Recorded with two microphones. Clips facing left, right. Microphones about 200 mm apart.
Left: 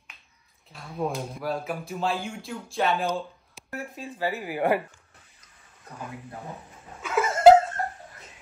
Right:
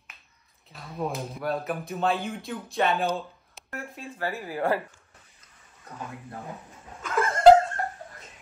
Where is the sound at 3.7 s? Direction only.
15° left (ahead or behind).